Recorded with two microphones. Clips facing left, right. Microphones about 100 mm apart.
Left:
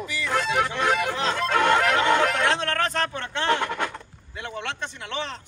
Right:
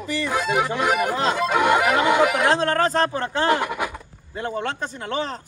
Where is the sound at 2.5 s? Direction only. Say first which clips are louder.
Right 6 dB; 35° right (ahead or behind).